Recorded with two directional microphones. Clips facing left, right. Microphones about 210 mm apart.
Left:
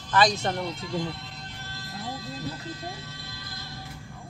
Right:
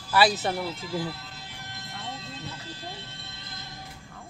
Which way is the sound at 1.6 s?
20° right (ahead or behind).